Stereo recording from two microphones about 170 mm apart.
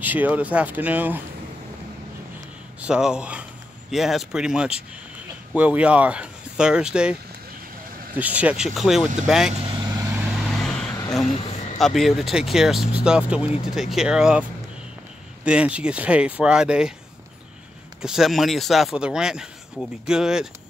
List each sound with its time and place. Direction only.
0.0 s speech: 10° right (ahead or behind)
2.8 s speech: 5° right (ahead or behind)
8.2 s speech: 10° right (ahead or behind)
9.6 s vehicle: 30° right (ahead or behind)
10.1 s vehicle: centre (ahead or behind)
11.4 s a sound: 40° left (ahead or behind)
11.8 s speech: centre (ahead or behind)
15.4 s speech: 5° right (ahead or behind)
18.0 s speech: centre (ahead or behind)